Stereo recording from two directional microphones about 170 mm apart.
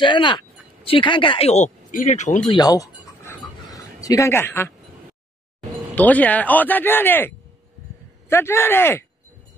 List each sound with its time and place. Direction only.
0.0 s speech: 30° left (ahead or behind); by 2.4 s 45° left (ahead or behind)
2.4 s a sound: 25° left (ahead or behind)
5.9 s speech: 10° left (ahead or behind)